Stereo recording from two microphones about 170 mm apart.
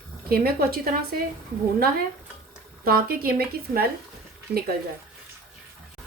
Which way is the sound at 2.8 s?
60° right (ahead or behind).